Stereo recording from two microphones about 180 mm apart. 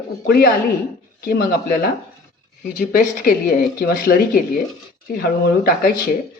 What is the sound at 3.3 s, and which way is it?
Speech, 55° left (ahead or behind).